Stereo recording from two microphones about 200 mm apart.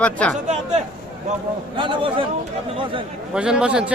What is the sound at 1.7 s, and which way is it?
Speech, 25° right (ahead or behind).